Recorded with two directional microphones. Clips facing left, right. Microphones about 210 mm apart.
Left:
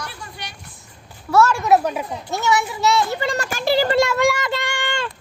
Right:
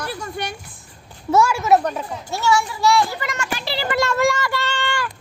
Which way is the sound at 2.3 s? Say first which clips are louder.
Right 1 dB; 20° left (ahead or behind).